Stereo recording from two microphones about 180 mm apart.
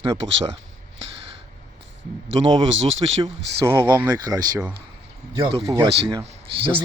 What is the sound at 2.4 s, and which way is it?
Speech, 35° right (ahead or behind).